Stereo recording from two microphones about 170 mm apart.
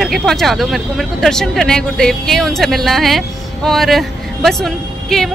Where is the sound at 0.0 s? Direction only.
Centre (ahead or behind).